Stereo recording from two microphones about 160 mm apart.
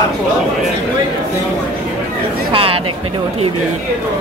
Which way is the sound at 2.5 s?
35° right (ahead or behind).